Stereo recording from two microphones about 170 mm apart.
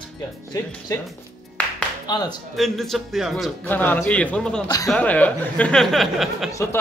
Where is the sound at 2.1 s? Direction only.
25° left (ahead or behind).